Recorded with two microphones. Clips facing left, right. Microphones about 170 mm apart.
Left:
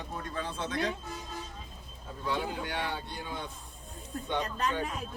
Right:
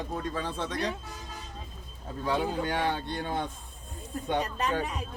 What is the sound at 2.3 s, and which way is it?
Speech, 40° right (ahead or behind).